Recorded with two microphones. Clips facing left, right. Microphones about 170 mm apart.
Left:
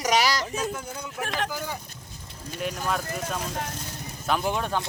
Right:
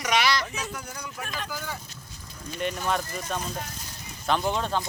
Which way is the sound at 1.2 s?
75° left (ahead or behind).